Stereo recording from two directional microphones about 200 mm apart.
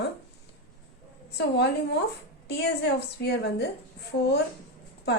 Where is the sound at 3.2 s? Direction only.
55° left (ahead or behind).